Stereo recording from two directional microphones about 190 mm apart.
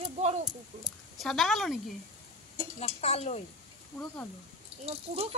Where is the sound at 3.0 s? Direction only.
35° left (ahead or behind).